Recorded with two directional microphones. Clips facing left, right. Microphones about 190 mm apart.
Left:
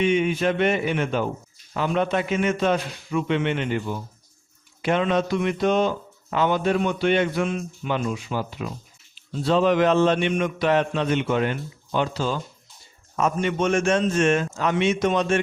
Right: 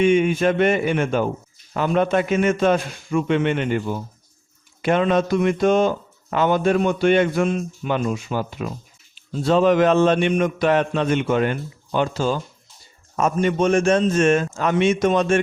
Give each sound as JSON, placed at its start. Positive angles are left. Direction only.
{"t": 0.0, "sound": "a man's voice", "side_deg": -50}